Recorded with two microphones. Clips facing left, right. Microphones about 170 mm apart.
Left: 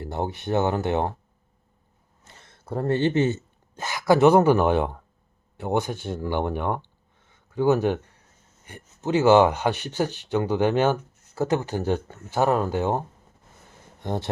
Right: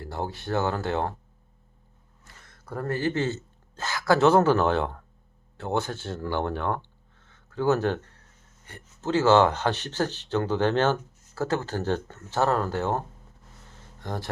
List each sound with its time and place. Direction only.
0.0 s speech: 20° left (ahead or behind)
2.2 s speech: 25° left (ahead or behind)
14.0 s speech: 20° left (ahead or behind)